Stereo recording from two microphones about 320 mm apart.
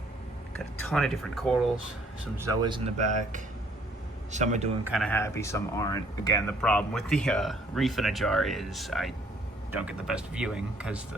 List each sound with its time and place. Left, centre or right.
0.8 s speech: centre
2.4 s a man's voice: centre
4.9 s speech: centre